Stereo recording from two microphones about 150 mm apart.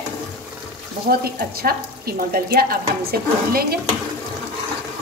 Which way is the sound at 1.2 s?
90° right.